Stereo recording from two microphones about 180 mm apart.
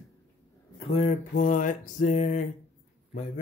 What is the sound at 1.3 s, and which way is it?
Mantra, 45° left (ahead or behind).